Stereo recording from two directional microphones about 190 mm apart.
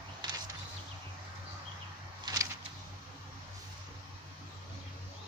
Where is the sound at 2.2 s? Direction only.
20° right (ahead or behind).